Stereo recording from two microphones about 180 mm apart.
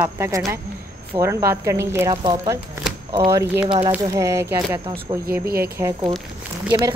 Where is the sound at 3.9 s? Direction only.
15° right (ahead or behind).